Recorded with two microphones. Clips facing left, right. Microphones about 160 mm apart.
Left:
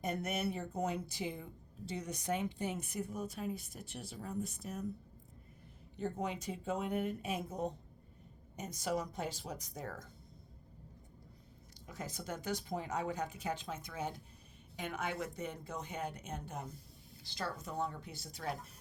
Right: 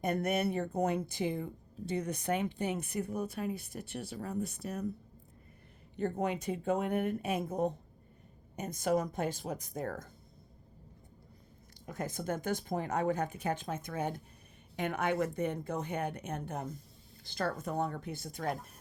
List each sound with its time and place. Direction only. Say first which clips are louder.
0.0 s speech: right 6 dB; 60° right (ahead or behind)
6.0 s speech: right 5 dB; 60° right (ahead or behind)
11.9 s speech: right 7 dB; 50° right (ahead or behind)